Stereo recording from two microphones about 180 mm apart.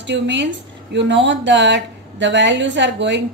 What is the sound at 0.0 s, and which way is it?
Speech, 80° right.